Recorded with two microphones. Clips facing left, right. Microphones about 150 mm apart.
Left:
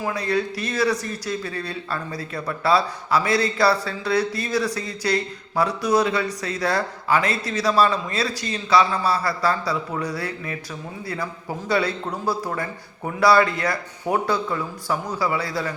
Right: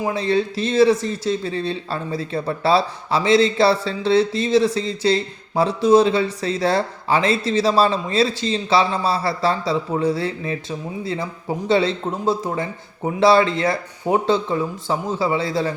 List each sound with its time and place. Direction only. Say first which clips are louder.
0.0 s speech: right 4 dB; 25° right (ahead or behind)